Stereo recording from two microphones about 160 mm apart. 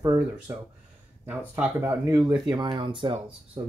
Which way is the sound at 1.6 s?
15° right (ahead or behind).